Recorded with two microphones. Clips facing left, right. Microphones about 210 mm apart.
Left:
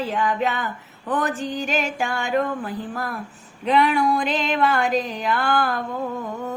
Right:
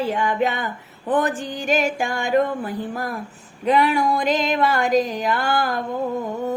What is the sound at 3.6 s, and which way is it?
Speech, 40° right (ahead or behind).